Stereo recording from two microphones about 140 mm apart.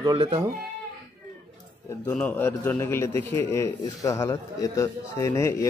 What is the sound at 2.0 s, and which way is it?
A man's voice, 15° left (ahead or behind).